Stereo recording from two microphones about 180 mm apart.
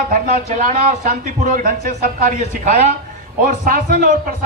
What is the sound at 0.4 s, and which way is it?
A man's voice, 45° right (ahead or behind).